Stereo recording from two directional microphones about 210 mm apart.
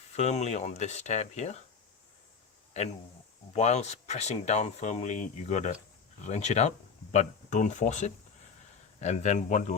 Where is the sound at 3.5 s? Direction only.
30° left (ahead or behind).